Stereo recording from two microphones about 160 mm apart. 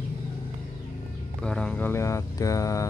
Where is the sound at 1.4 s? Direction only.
5° left (ahead or behind).